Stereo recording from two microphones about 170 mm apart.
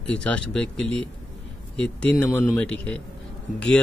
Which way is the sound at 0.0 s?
5° left (ahead or behind).